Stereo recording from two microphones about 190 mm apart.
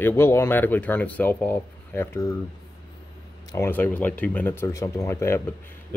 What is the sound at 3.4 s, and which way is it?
Speech, 15° left (ahead or behind).